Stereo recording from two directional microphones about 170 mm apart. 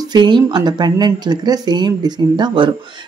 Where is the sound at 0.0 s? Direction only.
25° right (ahead or behind).